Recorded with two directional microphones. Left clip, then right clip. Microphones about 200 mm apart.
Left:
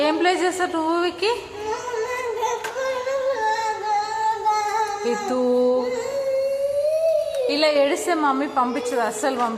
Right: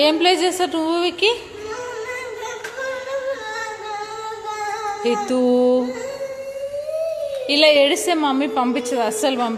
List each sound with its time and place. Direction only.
0.0 s a woman's voice: 30° right (ahead or behind)
5.0 s a woman's voice: 30° right (ahead or behind)
7.4 s a woman's voice: 30° right (ahead or behind)